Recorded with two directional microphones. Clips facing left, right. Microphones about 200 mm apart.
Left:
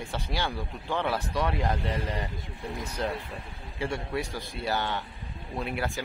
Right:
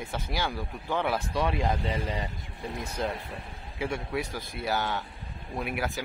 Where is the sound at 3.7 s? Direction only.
10° right (ahead or behind).